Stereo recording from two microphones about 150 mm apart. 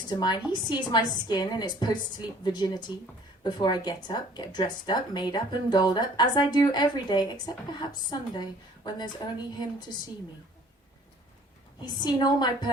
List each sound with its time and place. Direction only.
0.1 s speech: 30° left (ahead or behind)
11.9 s speech: 30° left (ahead or behind)